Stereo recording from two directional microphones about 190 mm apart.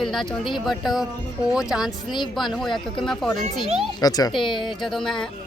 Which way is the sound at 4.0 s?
20° left (ahead or behind).